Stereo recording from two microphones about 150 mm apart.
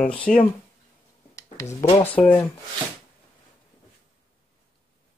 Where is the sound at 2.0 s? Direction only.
10° left (ahead or behind).